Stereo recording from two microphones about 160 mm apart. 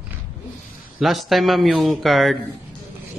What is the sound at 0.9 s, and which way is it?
Speech, centre (ahead or behind).